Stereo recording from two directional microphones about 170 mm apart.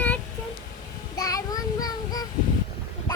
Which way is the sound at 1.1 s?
20° left (ahead or behind).